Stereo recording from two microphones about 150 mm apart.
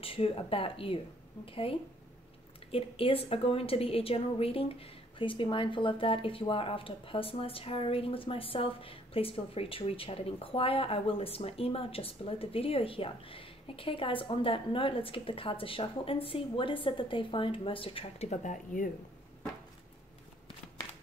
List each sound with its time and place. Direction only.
0.0 s a woman's voice: 40° left (ahead or behind); by 18.9 s 60° left (ahead or behind)